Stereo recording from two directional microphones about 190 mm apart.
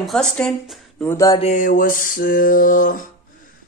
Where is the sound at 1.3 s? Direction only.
40° left (ahead or behind).